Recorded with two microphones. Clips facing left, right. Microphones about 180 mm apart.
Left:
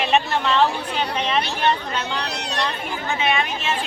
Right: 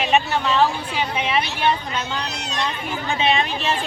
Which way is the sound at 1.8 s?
65° left (ahead or behind).